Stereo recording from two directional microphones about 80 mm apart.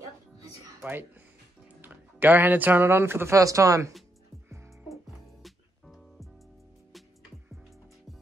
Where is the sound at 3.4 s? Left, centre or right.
Right.